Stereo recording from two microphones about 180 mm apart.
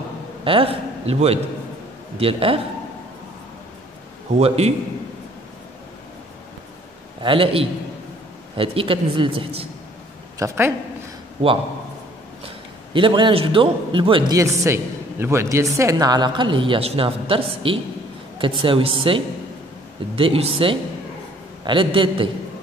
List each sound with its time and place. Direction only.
0.4 s a man's voice: 30° right (ahead or behind)
4.4 s a man's voice: 35° right (ahead or behind)
7.2 s a man's voice: 30° right (ahead or behind)
10.4 s speech: 15° right (ahead or behind)
12.9 s a man's voice: 25° right (ahead or behind)